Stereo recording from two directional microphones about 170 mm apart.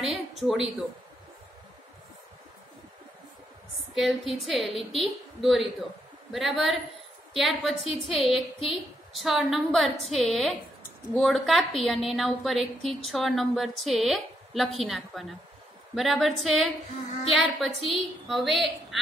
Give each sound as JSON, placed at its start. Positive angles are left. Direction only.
{"t": 0.0, "sound": "speech", "side_deg": 0}
{"t": 3.9, "sound": "a woman's voice", "side_deg": 0}
{"t": 7.8, "sound": "a woman's voice", "side_deg": 30}
{"t": 8.2, "sound": "a woman's voice", "side_deg": 0}